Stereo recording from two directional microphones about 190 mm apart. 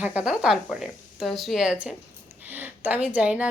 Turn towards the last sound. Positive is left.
turn(degrees=-5)  # may be behind; listen again after turning